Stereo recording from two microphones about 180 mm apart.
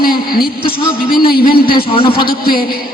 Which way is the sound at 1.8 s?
30° left (ahead or behind).